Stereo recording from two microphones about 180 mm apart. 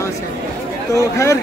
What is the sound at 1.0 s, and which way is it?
Speech, 15° left (ahead or behind).